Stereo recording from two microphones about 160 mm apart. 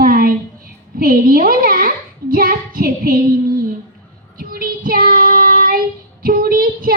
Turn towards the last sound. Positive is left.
turn(degrees=-65)  # may be behind; listen again after turning